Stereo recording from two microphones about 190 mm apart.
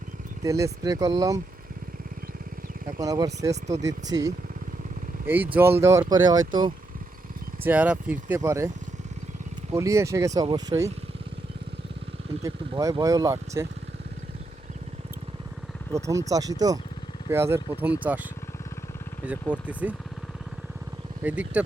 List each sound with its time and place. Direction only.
0.4 s speech: 15° right (ahead or behind)
3.0 s speech: 20° right (ahead or behind)
7.6 s speech: 10° right (ahead or behind)
9.7 s speech: 15° right (ahead or behind)
12.4 s speech: 20° right (ahead or behind)
15.9 s speech: 15° right (ahead or behind)
21.2 s speech: 5° right (ahead or behind)